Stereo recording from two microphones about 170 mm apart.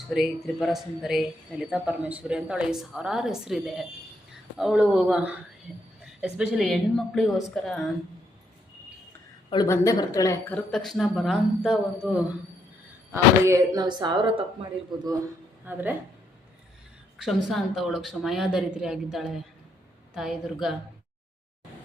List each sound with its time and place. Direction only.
0.1 s speech: centre (ahead or behind)
9.5 s speech: 20° left (ahead or behind); by 12.4 s 10° right (ahead or behind)
13.4 s speech: 20° right (ahead or behind)
15.6 s speech: 10° right (ahead or behind)
17.2 s speech: centre (ahead or behind)